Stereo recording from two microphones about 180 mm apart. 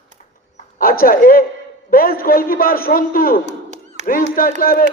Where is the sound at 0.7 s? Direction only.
55° left (ahead or behind).